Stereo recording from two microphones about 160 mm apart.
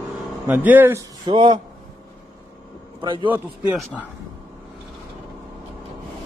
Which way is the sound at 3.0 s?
30° right (ahead or behind).